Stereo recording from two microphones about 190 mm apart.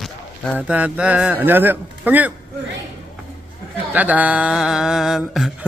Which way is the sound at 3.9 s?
10° right (ahead or behind).